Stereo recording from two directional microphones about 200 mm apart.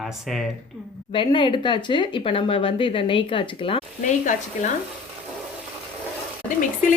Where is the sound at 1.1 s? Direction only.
25° left (ahead or behind).